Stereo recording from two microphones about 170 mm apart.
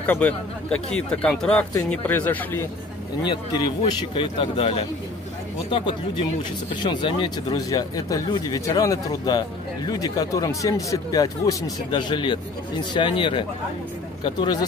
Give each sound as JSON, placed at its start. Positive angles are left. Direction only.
{"t": 0.0, "sound": "speech", "side_deg": 10}
{"t": 3.3, "sound": "a man's voice", "side_deg": 25}